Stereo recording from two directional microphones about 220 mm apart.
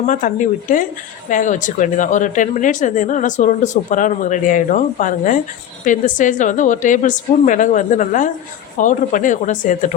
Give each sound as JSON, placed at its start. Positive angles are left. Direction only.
{"t": 0.1, "sound": "speech", "side_deg": 35}